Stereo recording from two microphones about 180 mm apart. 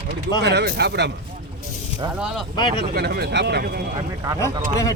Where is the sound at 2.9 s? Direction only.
60° right (ahead or behind).